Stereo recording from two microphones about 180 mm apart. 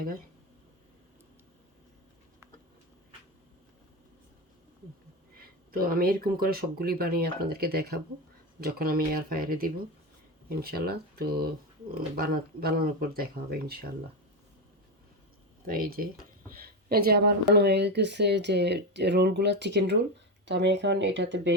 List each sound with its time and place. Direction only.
5.7 s speech: 55° right (ahead or behind)
15.6 s speech: 50° right (ahead or behind); by 21.5 s 80° right